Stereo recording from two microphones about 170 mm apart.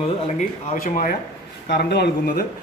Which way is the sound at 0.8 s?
55° left (ahead or behind).